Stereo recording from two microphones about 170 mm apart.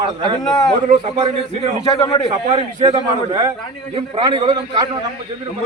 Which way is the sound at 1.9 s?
20° left (ahead or behind).